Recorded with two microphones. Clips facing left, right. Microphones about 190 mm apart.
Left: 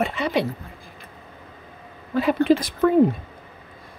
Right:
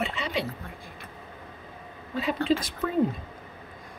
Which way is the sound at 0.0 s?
55° left (ahead or behind).